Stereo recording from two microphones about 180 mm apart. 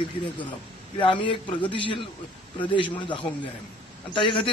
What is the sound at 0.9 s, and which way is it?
A man's voice, 25° left (ahead or behind).